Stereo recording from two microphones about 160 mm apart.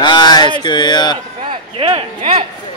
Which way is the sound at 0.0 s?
25° left (ahead or behind).